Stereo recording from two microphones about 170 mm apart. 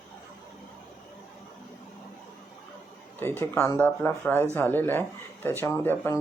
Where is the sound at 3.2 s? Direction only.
15° left (ahead or behind).